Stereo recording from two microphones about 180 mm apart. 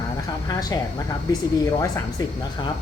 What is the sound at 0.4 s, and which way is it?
Speech, 20° left (ahead or behind).